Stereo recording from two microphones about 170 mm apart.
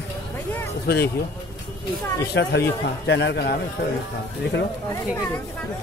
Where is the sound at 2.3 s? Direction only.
75° left (ahead or behind).